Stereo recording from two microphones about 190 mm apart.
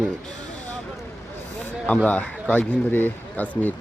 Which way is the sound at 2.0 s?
10° left (ahead or behind).